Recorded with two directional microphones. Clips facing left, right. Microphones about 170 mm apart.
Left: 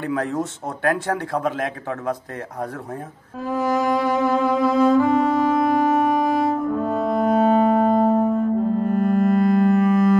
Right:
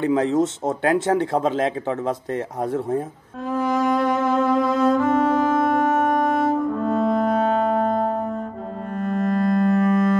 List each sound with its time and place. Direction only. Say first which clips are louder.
0.0 s speech: right 5 dB; 20° right (ahead or behind)
3.4 s cello: even; 5° left (ahead or behind)
8.8 s music: left 1 dB; 5° left (ahead or behind)